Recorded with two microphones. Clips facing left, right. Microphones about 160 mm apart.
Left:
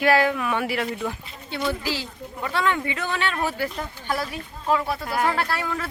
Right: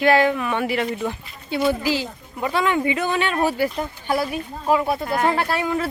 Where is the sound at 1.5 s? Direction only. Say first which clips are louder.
Right 6 dB; 10° right (ahead or behind).